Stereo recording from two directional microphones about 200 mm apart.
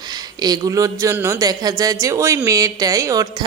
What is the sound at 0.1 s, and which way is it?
A man's voice, 20° right (ahead or behind).